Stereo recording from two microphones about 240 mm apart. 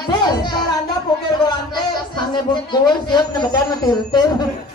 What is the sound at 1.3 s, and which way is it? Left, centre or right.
Speech, centre.